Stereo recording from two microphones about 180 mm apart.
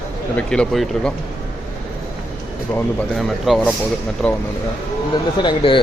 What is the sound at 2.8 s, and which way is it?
A man's voice, 5° left (ahead or behind).